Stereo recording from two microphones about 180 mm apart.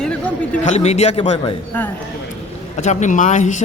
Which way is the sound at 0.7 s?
35° left (ahead or behind).